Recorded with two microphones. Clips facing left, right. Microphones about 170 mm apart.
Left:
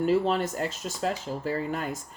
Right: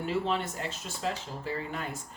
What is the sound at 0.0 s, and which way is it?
Speech, 40° left (ahead or behind).